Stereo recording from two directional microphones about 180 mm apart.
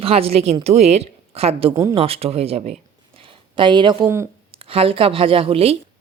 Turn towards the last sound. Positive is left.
turn(degrees=-30)  # may be behind; listen again after turning